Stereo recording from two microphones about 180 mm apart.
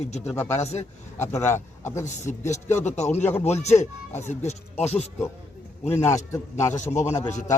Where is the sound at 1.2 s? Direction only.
15° left (ahead or behind).